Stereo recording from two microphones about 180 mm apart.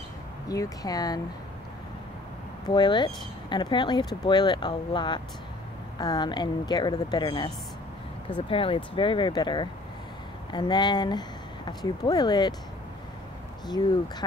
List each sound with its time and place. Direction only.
0.5 s speech: 20° left (ahead or behind)
2.7 s speech: 25° left (ahead or behind)